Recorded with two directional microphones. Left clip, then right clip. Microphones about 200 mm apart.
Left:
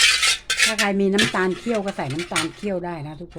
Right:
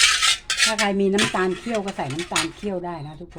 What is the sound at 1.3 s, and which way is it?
Speech, 25° left (ahead or behind).